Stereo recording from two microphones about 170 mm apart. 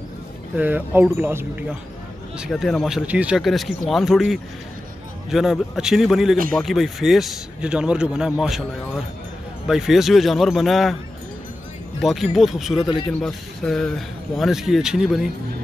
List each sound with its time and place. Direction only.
0.6 s speech: 10° right (ahead or behind)
9.7 s speech: centre (ahead or behind)
12.0 s speech: centre (ahead or behind)